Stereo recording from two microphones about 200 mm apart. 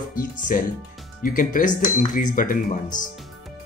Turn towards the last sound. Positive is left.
turn(degrees=40)  # may be behind; listen again after turning